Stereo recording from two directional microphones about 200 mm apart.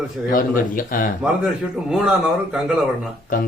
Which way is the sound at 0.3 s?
45° left (ahead or behind).